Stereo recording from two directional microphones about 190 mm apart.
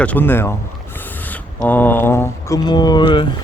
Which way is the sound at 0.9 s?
10° left (ahead or behind).